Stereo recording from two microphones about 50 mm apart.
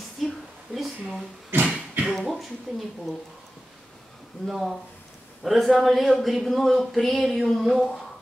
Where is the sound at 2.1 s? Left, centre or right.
Centre.